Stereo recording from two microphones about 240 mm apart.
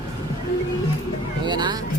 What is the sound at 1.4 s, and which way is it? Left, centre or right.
Speech, centre.